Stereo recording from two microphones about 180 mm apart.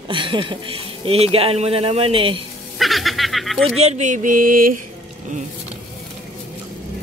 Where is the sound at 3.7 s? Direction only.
40° right (ahead or behind).